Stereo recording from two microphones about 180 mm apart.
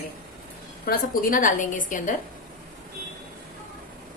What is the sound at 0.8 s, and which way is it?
A woman's voice, 50° left (ahead or behind).